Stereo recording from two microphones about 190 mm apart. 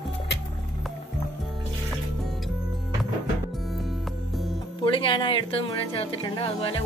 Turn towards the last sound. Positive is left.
turn(degrees=25)  # may be behind; listen again after turning